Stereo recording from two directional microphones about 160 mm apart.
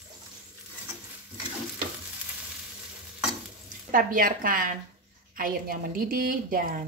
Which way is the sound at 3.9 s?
60° right (ahead or behind).